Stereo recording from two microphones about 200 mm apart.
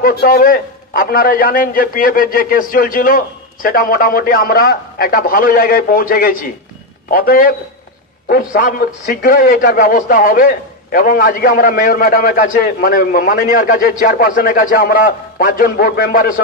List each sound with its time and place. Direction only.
0.0 s a man's voice: 50° left (ahead or behind)